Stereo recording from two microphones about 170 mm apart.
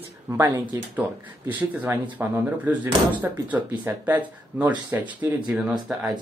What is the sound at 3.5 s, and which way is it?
Speech, 10° right (ahead or behind).